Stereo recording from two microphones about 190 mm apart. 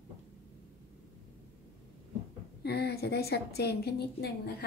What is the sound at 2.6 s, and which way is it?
A woman's voice, 60° left (ahead or behind).